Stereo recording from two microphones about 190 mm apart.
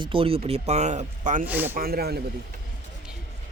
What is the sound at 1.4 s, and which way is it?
Speech, 10° right (ahead or behind).